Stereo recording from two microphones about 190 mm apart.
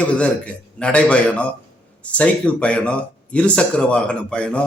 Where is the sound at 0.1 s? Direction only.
5° left (ahead or behind).